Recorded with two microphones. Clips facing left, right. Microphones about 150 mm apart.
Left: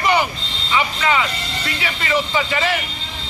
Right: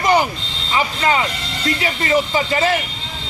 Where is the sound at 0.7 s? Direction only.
35° right (ahead or behind).